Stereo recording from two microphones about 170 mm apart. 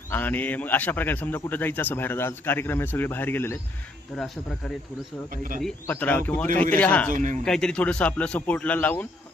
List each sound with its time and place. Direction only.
0.1 s a man's voice: 10° left (ahead or behind)
4.1 s speech: centre (ahead or behind)
5.3 s speech: 55° right (ahead or behind)
5.8 s a man's voice: 10° left (ahead or behind)
7.1 s speech: 50° right (ahead or behind)
7.4 s a man's voice: 5° left (ahead or behind)